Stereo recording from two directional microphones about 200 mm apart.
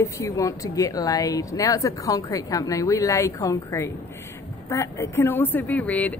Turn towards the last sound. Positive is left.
turn(degrees=5)  # may be behind; listen again after turning